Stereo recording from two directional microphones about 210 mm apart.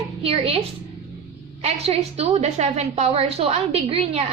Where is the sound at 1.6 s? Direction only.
30° right (ahead or behind).